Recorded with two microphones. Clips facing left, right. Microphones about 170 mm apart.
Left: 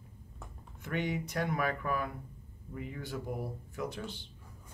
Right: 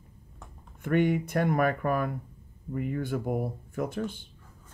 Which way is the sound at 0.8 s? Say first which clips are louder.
Right 10 dB; 55° right (ahead or behind).